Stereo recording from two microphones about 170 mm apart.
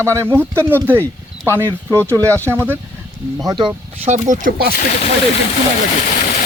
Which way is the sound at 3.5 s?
25° right (ahead or behind).